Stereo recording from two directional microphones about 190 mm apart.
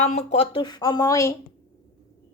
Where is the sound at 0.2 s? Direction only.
30° left (ahead or behind); by 1.4 s 15° left (ahead or behind).